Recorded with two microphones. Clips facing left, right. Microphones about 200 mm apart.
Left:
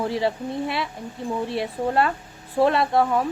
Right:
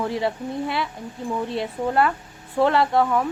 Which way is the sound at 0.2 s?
25° left (ahead or behind).